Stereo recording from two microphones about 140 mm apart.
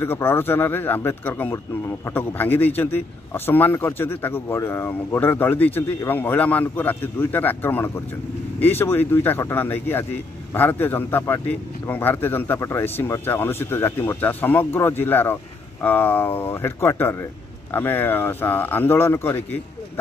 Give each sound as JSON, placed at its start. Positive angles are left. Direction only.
{"t": 0.0, "sound": "a man's voice", "side_deg": 15}